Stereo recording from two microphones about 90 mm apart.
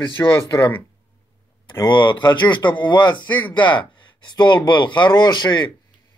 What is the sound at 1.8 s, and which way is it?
Speech, 60° left (ahead or behind).